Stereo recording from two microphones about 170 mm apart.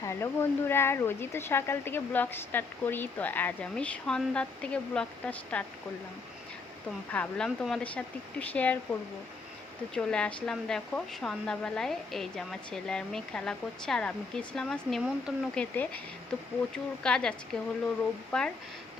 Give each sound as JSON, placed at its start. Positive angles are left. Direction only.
{"t": 0.0, "sound": "speech", "side_deg": 15}
{"t": 7.1, "sound": "speech", "side_deg": 5}